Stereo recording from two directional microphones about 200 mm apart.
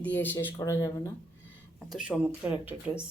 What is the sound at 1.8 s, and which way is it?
Speech, centre (ahead or behind).